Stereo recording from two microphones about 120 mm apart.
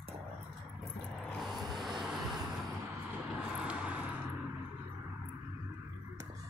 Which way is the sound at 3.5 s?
10° right (ahead or behind).